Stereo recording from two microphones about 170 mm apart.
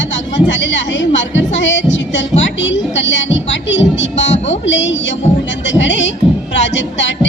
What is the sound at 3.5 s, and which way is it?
Music, 90° left.